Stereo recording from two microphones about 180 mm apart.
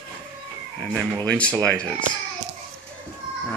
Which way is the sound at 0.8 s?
5° right (ahead or behind).